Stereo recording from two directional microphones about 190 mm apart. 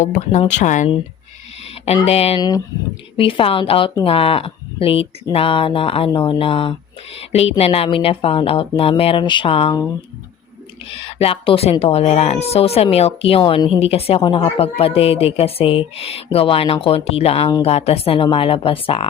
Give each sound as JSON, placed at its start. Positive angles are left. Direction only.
{"t": 0.0, "sound": "speech", "side_deg": 40}
{"t": 2.0, "sound": "speech", "side_deg": 30}
{"t": 2.4, "sound": "a woman's voice", "side_deg": 20}
{"t": 10.8, "sound": "a woman's voice", "side_deg": 30}